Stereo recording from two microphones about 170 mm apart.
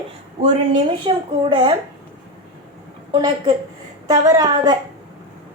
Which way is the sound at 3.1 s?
25° right (ahead or behind).